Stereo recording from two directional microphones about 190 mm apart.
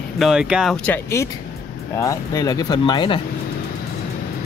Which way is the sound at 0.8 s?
15° left (ahead or behind).